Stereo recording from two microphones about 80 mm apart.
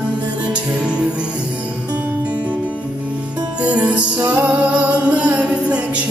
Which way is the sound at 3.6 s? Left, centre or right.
Centre.